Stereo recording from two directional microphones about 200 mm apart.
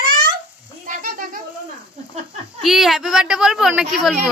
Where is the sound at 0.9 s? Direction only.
45° right (ahead or behind).